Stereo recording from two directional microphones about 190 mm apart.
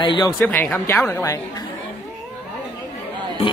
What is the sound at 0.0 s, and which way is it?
Speech, 25° left (ahead or behind).